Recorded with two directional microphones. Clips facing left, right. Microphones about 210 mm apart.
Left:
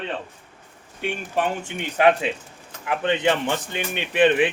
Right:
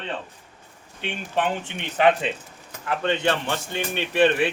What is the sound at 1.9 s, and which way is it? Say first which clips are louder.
A man's voice: left 1 dB; 10° left (ahead or behind).